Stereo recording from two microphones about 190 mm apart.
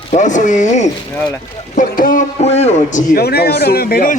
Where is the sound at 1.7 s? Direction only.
45° left (ahead or behind).